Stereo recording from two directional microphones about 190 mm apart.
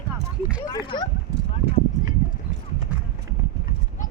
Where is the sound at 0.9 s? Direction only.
25° left (ahead or behind).